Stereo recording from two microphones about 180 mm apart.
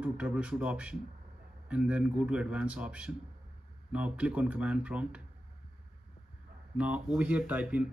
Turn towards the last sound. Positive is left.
turn(degrees=-5)  # may be behind; listen again after turning